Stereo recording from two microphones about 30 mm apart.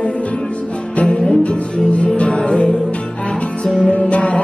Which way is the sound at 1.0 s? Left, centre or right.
Left.